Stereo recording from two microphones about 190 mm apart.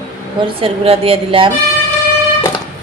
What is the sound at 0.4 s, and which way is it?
A woman's voice, 30° right (ahead or behind).